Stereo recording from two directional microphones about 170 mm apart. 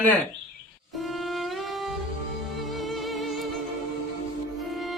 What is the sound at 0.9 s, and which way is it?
Music, centre (ahead or behind).